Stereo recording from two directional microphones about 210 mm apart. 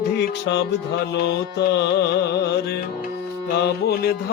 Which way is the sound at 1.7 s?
55° left (ahead or behind).